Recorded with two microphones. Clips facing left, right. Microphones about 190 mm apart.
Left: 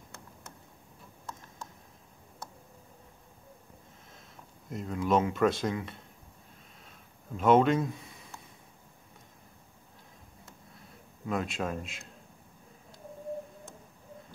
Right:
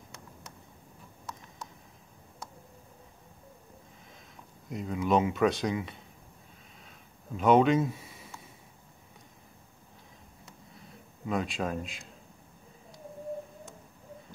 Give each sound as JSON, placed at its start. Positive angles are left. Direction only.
{"t": 4.6, "sound": "speech", "side_deg": 0}
{"t": 7.3, "sound": "speech", "side_deg": 0}
{"t": 11.2, "sound": "speech", "side_deg": 0}